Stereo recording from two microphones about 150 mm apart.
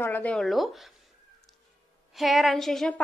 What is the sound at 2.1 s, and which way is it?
Speech, centre (ahead or behind).